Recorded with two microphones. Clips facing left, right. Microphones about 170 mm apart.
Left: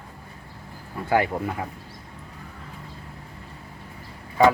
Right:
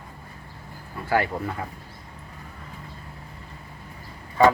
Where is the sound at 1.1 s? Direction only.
20° left (ahead or behind).